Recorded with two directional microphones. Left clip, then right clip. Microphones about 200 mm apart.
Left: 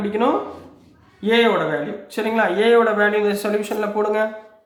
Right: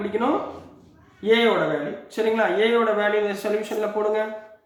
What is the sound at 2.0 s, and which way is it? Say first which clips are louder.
Speech: left 1 dB; 45° left (ahead or behind).